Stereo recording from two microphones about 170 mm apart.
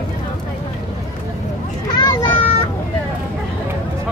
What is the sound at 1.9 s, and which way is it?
Children playing, 25° left (ahead or behind).